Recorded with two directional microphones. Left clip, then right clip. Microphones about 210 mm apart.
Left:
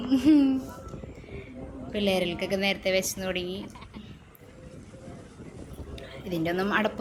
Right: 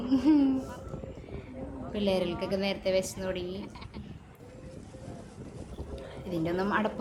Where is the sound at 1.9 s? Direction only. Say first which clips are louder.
Left 3 dB; 5° left (ahead or behind).